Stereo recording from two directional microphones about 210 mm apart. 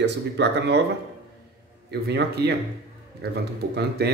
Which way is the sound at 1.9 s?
50° right (ahead or behind).